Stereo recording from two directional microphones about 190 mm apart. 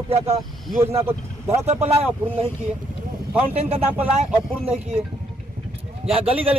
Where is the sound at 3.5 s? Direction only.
35° right (ahead or behind).